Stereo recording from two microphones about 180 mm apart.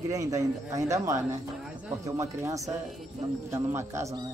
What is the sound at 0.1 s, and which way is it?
Speech, 20° right (ahead or behind).